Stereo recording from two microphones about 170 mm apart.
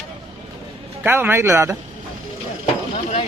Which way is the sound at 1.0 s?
10° right (ahead or behind).